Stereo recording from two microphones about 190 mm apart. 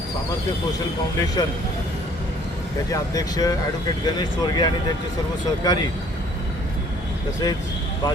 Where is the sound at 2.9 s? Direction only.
20° left (ahead or behind).